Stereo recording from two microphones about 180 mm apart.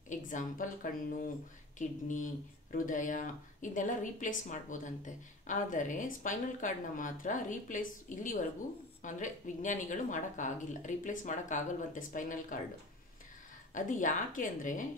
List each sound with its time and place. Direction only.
0.1 s a sound: 45° left (ahead or behind)
1.8 s speech: 45° left (ahead or behind)
13.7 s speech: 45° left (ahead or behind)